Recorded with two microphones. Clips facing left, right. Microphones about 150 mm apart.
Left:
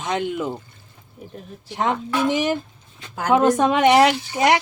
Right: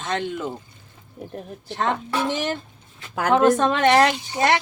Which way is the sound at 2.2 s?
10° left (ahead or behind).